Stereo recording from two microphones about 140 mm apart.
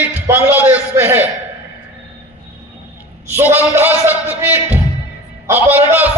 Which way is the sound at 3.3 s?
15° right (ahead or behind).